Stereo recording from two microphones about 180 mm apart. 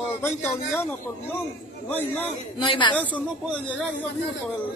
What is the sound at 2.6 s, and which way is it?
Speech, 25° left (ahead or behind).